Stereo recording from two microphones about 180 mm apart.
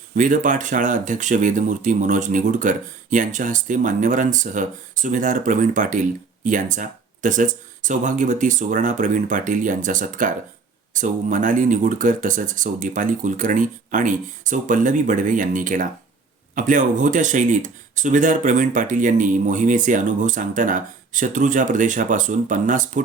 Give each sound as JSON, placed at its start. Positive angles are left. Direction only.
{"t": 0.1, "sound": "speech", "side_deg": -45}